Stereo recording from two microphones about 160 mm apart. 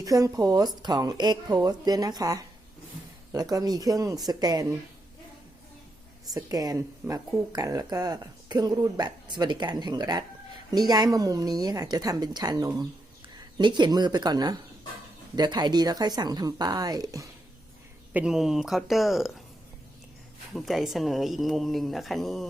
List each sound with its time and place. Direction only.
0.0 s speech: 20° right (ahead or behind)
6.3 s speech: 25° right (ahead or behind)
18.1 s speech: 5° right (ahead or behind)
20.5 s speech: centre (ahead or behind)